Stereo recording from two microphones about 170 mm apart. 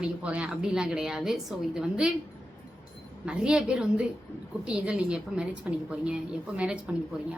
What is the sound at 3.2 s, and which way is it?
A woman's voice, 5° right (ahead or behind).